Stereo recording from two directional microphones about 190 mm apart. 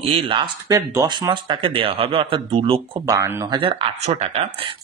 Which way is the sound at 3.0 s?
15° right (ahead or behind).